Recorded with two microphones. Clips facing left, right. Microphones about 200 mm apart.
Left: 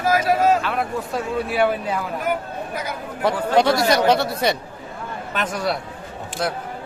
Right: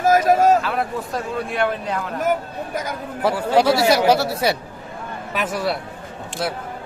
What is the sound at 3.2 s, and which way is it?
Speech, 10° right (ahead or behind).